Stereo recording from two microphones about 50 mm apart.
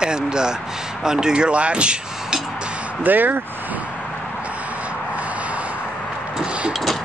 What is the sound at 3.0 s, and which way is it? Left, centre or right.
Speech, right.